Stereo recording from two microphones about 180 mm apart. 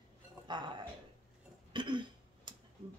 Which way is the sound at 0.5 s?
25° right (ahead or behind).